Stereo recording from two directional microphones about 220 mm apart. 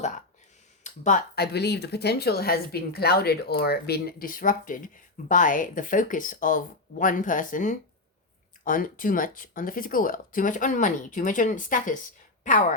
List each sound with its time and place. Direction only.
0.9 s speech: 35° left (ahead or behind)
1.4 s a woman's voice: 50° left (ahead or behind)